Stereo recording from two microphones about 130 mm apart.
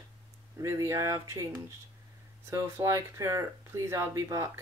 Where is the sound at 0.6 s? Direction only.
25° right (ahead or behind).